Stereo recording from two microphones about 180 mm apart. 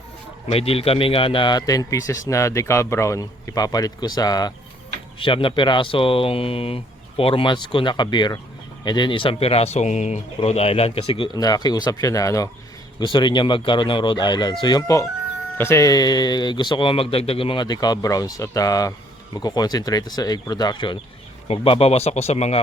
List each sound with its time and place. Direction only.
0.4 s speech: 35° left (ahead or behind)